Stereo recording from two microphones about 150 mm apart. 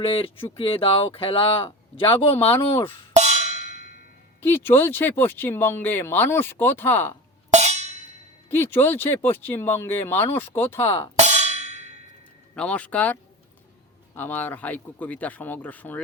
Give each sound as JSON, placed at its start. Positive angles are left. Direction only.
{"t": 0.0, "sound": "speech", "side_deg": 40}
{"t": 3.1, "sound": "percussion", "side_deg": -50}
{"t": 4.4, "sound": "speech", "side_deg": 15}
{"t": 7.5, "sound": "a sound", "side_deg": -50}
{"t": 8.4, "sound": "speech", "side_deg": 15}
{"t": 11.2, "sound": "a sound", "side_deg": -50}
{"t": 12.5, "sound": "speech", "side_deg": 10}
{"t": 14.2, "sound": "speech", "side_deg": 10}